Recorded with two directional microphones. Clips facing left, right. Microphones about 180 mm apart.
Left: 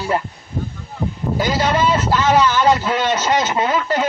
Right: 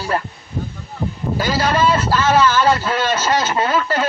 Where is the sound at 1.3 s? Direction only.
20° left (ahead or behind).